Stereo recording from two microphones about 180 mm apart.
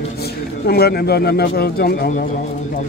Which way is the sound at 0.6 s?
60° left (ahead or behind).